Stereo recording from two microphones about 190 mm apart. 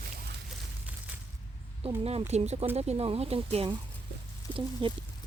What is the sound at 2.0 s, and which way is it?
Speech, 30° right (ahead or behind).